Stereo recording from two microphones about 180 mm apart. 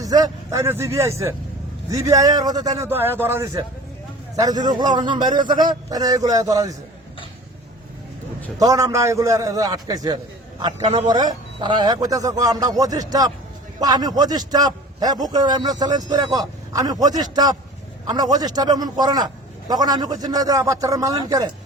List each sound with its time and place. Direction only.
0.0 s a man's voice: 20° right (ahead or behind)
8.5 s a man's voice: 20° right (ahead or behind)